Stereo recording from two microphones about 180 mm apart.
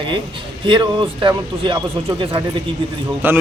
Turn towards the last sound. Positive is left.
turn(degrees=-10)  # may be behind; listen again after turning